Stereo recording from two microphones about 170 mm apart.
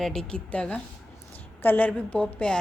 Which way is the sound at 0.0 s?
Centre (ahead or behind).